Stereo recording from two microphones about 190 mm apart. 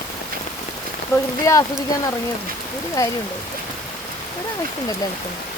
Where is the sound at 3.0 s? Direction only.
15° left (ahead or behind).